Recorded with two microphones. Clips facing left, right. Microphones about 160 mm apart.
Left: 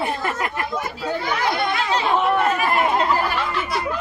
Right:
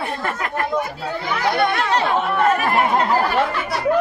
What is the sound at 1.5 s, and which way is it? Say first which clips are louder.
Chatter: right 3 dB; 60° right (ahead or behind).